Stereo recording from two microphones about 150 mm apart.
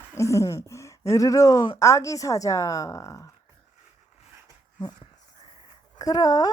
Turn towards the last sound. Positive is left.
turn(degrees=25)  # may be behind; listen again after turning